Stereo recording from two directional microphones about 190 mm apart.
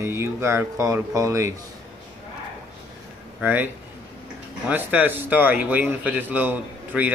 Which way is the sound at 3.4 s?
10° right (ahead or behind).